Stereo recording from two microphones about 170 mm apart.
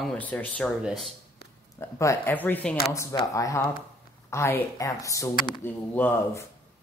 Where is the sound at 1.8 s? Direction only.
15° left (ahead or behind).